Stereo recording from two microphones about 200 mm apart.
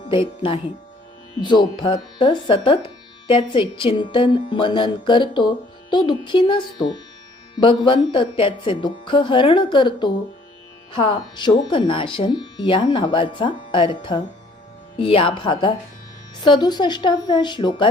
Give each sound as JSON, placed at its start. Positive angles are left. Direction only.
{"t": 0.0, "sound": "speech", "side_deg": 25}